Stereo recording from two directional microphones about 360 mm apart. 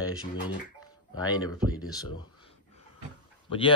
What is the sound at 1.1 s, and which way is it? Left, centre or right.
Speech, centre.